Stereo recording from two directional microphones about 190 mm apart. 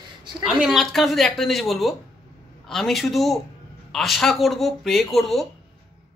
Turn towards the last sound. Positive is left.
turn(degrees=0)  # may be behind; listen again after turning